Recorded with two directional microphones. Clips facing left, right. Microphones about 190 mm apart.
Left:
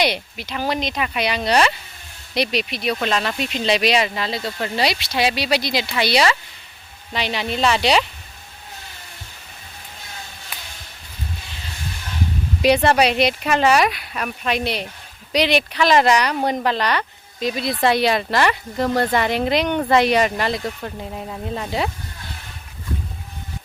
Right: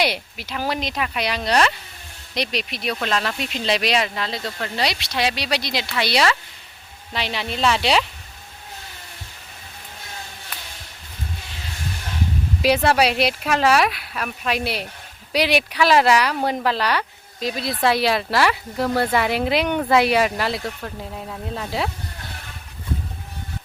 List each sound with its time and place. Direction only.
0.0 s speech: 5° right (ahead or behind)
12.6 s speech: 5° right (ahead or behind)